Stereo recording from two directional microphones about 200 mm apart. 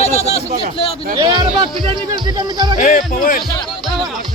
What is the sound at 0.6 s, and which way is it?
Speech, 30° left (ahead or behind).